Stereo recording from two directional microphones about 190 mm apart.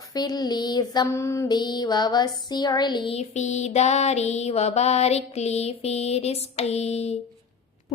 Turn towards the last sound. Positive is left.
turn(degrees=35)  # may be behind; listen again after turning